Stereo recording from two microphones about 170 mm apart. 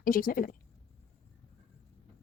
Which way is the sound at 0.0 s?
60° left (ahead or behind).